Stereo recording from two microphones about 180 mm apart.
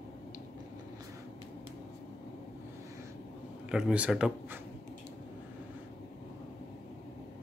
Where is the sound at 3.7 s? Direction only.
5° right (ahead or behind).